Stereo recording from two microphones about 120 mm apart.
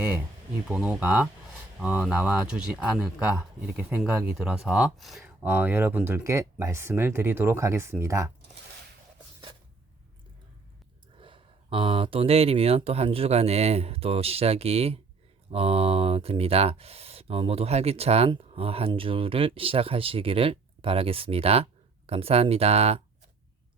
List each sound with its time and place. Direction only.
0.7 s speech: 10° right (ahead or behind)
5.2 s speech: 15° right (ahead or behind)
6.2 s speech: 25° right (ahead or behind)
11.2 s speech: 45° right (ahead or behind)